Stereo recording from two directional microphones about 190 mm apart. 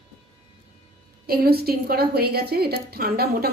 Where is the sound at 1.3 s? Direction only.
55° right (ahead or behind).